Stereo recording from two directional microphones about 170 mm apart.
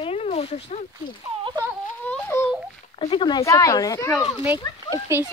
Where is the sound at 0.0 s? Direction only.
35° left (ahead or behind).